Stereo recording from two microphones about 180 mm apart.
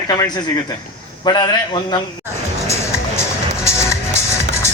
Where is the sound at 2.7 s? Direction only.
15° left (ahead or behind).